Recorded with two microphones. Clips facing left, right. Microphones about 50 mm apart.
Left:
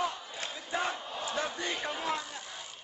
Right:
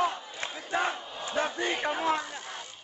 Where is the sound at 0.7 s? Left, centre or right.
Right.